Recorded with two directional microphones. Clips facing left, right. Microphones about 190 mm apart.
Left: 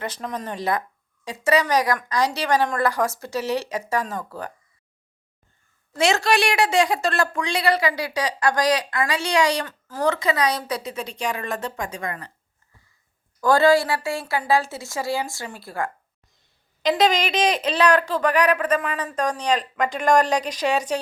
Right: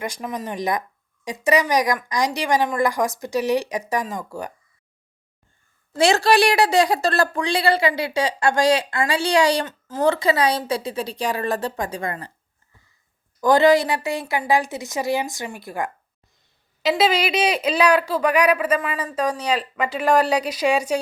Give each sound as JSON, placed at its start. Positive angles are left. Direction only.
{"t": 0.0, "sound": "speech", "side_deg": -10}
{"t": 5.9, "sound": "speech", "side_deg": -30}
{"t": 13.4, "sound": "speech", "side_deg": -20}
{"t": 16.8, "sound": "speech", "side_deg": -5}